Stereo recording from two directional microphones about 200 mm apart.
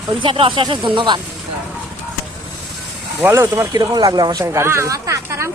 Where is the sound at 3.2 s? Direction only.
10° right (ahead or behind).